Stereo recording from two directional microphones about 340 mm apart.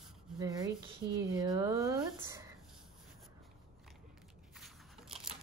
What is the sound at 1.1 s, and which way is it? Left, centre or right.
Speech, centre.